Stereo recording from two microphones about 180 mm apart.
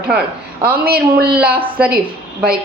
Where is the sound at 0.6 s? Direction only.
55° right (ahead or behind).